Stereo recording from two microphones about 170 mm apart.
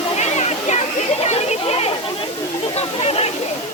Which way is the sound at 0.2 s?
40° left (ahead or behind).